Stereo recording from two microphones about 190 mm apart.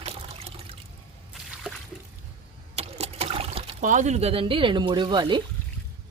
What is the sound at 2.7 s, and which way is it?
Water, 35° right (ahead or behind).